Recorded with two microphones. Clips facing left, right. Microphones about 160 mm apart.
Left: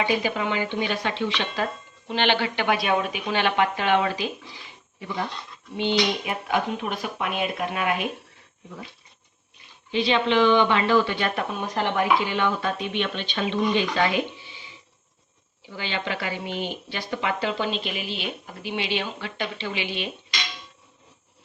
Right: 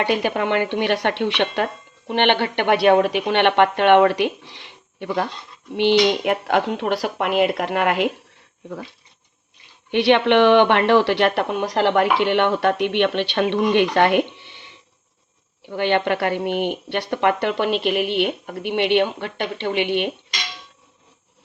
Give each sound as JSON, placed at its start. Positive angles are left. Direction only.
{"t": 0.0, "sound": "speech", "side_deg": -65}
{"t": 9.9, "sound": "speech", "side_deg": -65}